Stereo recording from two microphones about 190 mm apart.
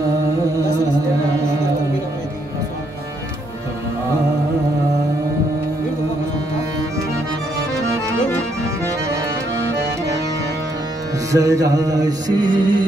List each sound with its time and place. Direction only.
11.3 s music: 15° right (ahead or behind)